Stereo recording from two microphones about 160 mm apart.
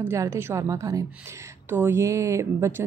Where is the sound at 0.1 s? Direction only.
15° right (ahead or behind).